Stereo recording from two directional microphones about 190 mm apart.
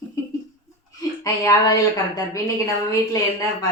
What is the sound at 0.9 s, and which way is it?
Speech, 20° left (ahead or behind).